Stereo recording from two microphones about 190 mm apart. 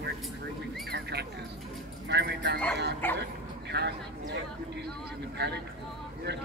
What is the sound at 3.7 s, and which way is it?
Speech, 60° right (ahead or behind).